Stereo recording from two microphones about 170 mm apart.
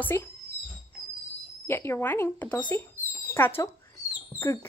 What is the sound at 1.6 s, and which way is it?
Speech, 15° left (ahead or behind).